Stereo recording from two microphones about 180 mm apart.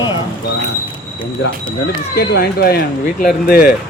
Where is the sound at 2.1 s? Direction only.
60° left (ahead or behind).